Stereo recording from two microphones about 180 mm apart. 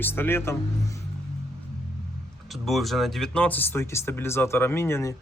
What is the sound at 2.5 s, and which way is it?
Speech, centre (ahead or behind).